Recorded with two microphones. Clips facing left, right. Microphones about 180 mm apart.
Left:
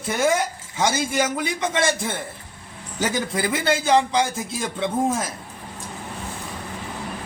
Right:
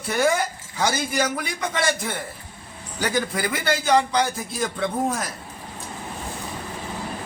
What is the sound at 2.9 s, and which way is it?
A man's voice, 25° left (ahead or behind).